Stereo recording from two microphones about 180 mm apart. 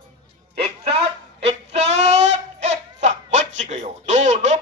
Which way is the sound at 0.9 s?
35° right (ahead or behind).